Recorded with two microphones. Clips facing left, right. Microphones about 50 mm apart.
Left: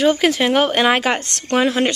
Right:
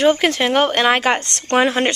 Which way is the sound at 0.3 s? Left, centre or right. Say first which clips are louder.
Even; centre.